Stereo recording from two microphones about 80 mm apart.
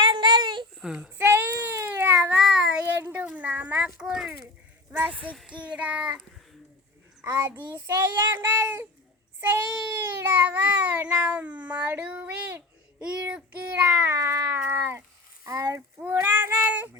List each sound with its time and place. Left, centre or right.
0.0 s a sound: right
0.8 s cat: centre
1.2 s a sound: right
2.3 s child singing: centre
2.8 s speech: right
3.8 s cat: centre
4.9 s speech: right
5.5 s cat: centre
7.9 s speech: right
10.0 s cat: right
14.1 s cat: right
14.7 s a sound: right
15.4 s a child's voice: right
16.0 s child singing: right